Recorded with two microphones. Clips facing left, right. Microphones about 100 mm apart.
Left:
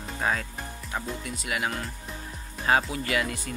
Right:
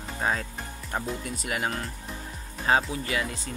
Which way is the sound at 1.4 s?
40° right (ahead or behind).